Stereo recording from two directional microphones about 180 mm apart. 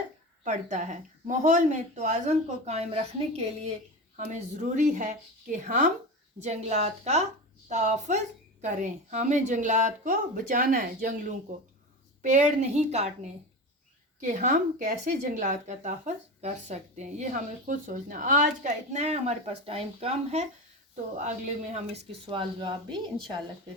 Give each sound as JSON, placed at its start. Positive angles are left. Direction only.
{"t": 0.4, "sound": "a woman's voice", "side_deg": -45}